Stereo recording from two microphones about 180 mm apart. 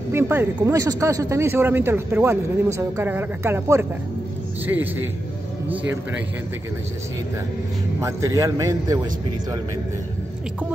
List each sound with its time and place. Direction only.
0.1 s speech: 10° right (ahead or behind)
8.0 s speech: 15° right (ahead or behind)